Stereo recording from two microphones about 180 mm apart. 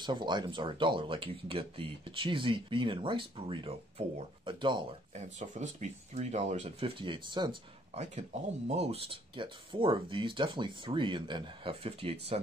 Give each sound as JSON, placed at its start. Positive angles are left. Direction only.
{"t": 0.0, "sound": "speech", "side_deg": -25}
{"t": 5.1, "sound": "speech", "side_deg": -40}
{"t": 7.0, "sound": "speech", "side_deg": -25}
{"t": 8.0, "sound": "speech", "side_deg": -40}